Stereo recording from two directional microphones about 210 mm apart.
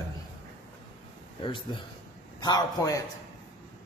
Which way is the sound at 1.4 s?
20° left (ahead or behind).